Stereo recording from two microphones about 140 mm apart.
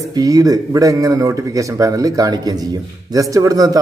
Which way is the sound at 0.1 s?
25° right (ahead or behind).